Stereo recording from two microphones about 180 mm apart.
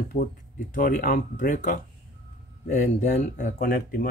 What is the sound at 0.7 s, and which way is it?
Speech, 50° left (ahead or behind).